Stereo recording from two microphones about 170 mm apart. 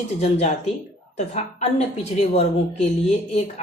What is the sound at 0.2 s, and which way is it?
Speech, 40° left (ahead or behind).